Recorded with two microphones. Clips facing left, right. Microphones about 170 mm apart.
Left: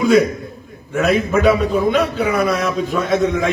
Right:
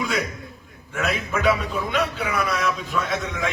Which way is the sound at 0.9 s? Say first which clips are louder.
Left 10 dB; 45° left (ahead or behind).